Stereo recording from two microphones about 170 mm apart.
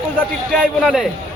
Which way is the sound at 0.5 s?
5° right (ahead or behind).